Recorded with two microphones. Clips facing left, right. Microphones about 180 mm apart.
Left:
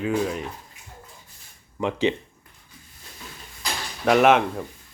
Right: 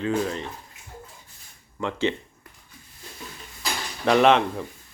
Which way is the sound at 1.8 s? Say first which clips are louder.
Left 3 dB; 15° left (ahead or behind).